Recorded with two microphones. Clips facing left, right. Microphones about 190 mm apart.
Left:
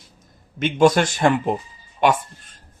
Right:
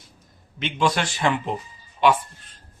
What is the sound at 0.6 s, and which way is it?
Speech, 45° left (ahead or behind).